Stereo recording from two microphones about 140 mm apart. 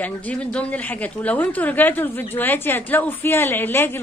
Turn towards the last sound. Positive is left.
turn(degrees=15)  # may be behind; listen again after turning